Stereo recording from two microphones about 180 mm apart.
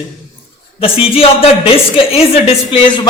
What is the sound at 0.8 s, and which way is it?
Speech, 30° left (ahead or behind).